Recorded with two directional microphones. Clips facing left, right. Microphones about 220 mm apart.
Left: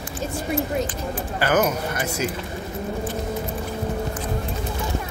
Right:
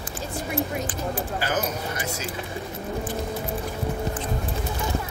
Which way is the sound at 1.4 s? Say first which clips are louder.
Left 10 dB; 65° left (ahead or behind).